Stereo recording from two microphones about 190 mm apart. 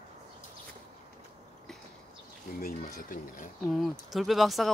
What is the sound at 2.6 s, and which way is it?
Speech, 50° left (ahead or behind).